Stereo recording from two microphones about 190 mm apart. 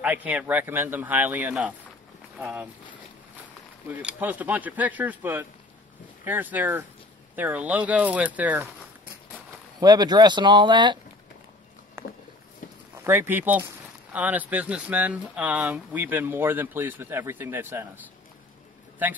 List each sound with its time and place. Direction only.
0.0 s speech: 10° right (ahead or behind)
3.9 s speech: 10° right (ahead or behind)
9.8 s speech: 20° right (ahead or behind)
12.0 s a sound: 15° right (ahead or behind)
13.0 s speech: 10° right (ahead or behind)